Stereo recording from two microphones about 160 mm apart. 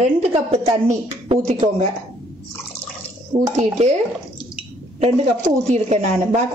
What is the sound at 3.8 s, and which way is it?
Speech, 45° right (ahead or behind).